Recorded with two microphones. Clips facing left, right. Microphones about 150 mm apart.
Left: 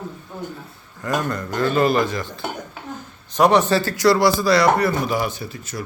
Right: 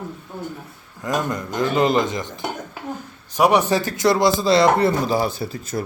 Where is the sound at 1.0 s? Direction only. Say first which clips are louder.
Even; 15° right (ahead or behind).